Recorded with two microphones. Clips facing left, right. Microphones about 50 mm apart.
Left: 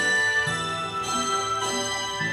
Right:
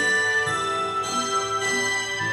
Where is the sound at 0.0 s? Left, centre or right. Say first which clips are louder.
Right 1 dB; right.